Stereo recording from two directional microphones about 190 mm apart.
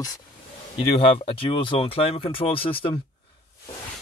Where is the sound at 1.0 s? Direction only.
30° left (ahead or behind).